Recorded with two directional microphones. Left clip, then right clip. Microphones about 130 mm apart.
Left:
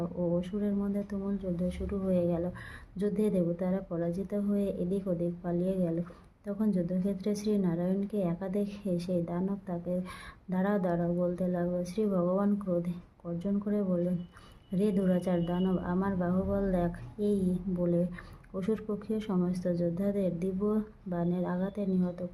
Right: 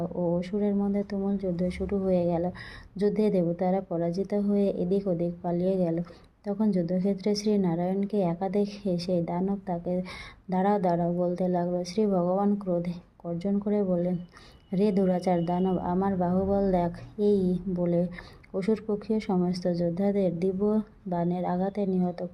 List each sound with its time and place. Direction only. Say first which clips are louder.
0.0 s a woman's voice: right 3 dB; 25° right (ahead or behind)